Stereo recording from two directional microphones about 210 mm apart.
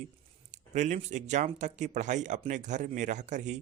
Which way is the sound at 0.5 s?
35° right (ahead or behind).